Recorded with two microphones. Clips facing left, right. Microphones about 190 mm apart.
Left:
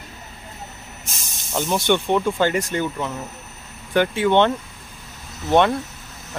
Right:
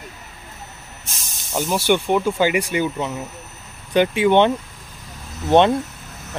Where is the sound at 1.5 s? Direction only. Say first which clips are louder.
Right 1 dB; 10° right (ahead or behind).